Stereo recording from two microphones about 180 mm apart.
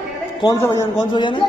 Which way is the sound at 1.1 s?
25° left (ahead or behind).